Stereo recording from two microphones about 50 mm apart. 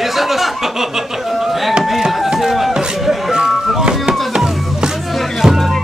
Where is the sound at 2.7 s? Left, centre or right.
Centre.